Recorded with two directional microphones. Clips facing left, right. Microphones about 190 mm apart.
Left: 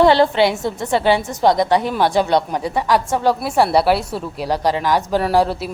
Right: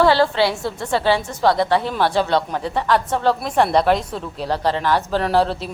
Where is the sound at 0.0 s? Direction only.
20° left (ahead or behind).